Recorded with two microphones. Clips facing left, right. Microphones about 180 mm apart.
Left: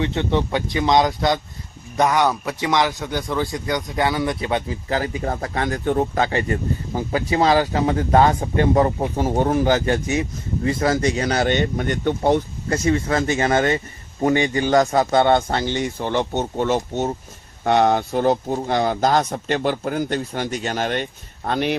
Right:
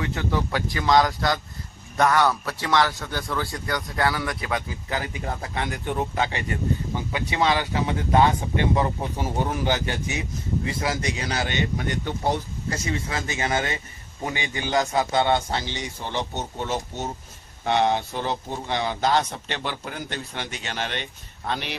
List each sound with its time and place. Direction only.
0.0 s a man's voice: 25° left (ahead or behind); by 21.7 s 50° left (ahead or behind)